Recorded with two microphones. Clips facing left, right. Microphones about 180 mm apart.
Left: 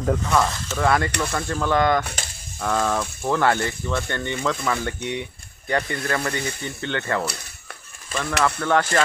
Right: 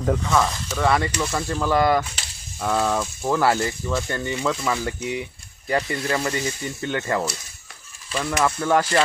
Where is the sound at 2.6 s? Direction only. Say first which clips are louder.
Right 1 dB; 5° right (ahead or behind).